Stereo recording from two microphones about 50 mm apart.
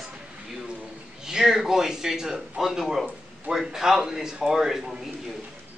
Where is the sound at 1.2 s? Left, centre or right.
Centre.